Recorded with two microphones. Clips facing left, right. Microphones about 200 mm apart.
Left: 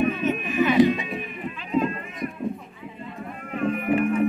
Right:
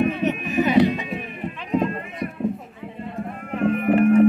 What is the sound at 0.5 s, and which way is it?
Music, 40° right (ahead or behind).